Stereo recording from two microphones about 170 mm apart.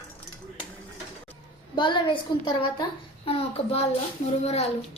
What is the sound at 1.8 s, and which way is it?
A woman's voice, 30° left (ahead or behind).